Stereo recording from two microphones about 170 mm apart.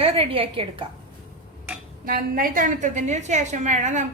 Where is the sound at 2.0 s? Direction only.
55° right (ahead or behind).